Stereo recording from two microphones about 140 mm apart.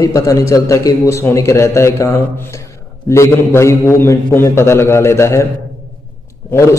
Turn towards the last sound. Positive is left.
turn(degrees=20)  # may be behind; listen again after turning